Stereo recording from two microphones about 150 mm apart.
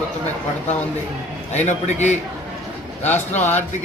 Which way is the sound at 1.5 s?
50° left (ahead or behind).